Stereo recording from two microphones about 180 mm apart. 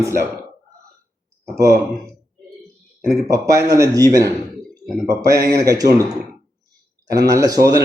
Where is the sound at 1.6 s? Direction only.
15° right (ahead or behind).